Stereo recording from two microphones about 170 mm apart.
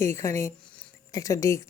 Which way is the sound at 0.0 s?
15° left (ahead or behind).